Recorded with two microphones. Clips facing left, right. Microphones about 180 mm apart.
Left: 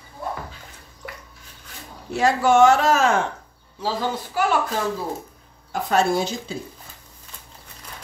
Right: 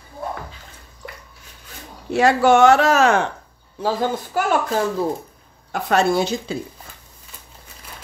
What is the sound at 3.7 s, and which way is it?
Speech, 50° right (ahead or behind).